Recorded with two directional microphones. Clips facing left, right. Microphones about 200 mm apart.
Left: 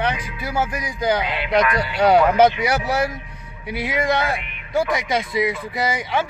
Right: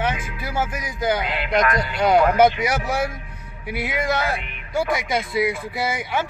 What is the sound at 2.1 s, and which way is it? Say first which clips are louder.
A man's voice: right 1 dB; centre (ahead or behind).